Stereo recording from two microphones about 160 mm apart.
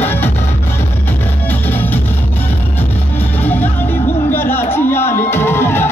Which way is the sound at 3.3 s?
10° left (ahead or behind).